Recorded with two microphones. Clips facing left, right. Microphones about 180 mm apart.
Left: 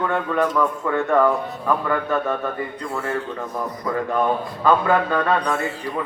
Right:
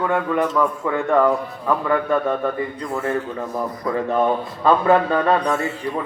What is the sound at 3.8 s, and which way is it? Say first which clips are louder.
Speech: right 2 dB; 20° right (ahead or behind).